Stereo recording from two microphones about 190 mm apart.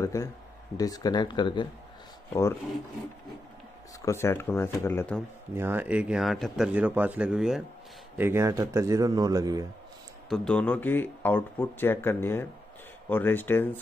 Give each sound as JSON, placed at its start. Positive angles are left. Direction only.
{"t": 0.0, "sound": "speech", "side_deg": 15}
{"t": 4.0, "sound": "speech", "side_deg": 15}
{"t": 5.5, "sound": "a man's voice", "side_deg": -10}
{"t": 10.3, "sound": "speech", "side_deg": 5}